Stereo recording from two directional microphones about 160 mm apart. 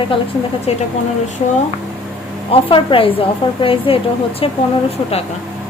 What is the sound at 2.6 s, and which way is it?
A woman's voice, 35° left (ahead or behind).